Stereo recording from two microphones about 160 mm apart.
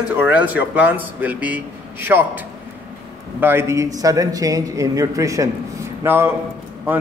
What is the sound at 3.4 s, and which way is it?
A man's voice, 15° right (ahead or behind).